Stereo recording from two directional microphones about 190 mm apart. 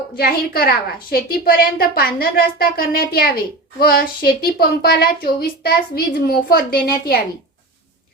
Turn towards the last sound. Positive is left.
turn(degrees=55)  # may be behind; listen again after turning